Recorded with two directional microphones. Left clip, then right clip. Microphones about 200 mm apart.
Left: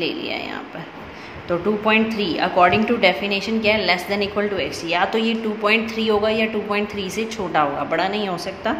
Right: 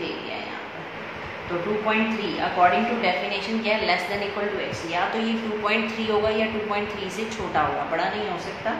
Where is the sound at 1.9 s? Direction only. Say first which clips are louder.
Left 7 dB; 55° left (ahead or behind).